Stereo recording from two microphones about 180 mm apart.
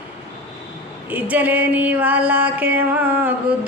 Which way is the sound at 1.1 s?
10° right (ahead or behind).